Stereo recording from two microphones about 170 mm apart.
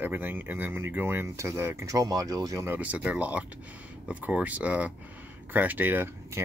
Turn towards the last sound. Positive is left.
turn(degrees=-10)  # may be behind; listen again after turning